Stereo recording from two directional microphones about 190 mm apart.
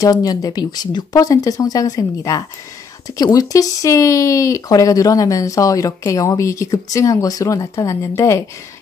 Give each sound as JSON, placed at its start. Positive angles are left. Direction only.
{"t": 0.0, "sound": "speech", "side_deg": 20}